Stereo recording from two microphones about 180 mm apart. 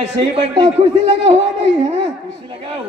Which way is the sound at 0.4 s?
30° right (ahead or behind).